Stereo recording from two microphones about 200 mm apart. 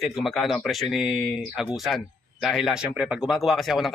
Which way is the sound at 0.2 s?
Centre (ahead or behind).